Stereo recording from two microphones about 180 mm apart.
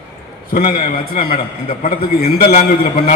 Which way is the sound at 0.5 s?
55° left (ahead or behind).